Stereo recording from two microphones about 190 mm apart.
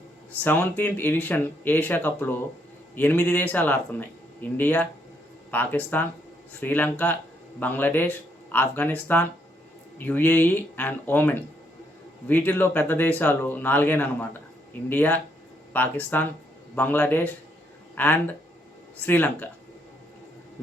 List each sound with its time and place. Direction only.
0.4 s speech: 10° left (ahead or behind)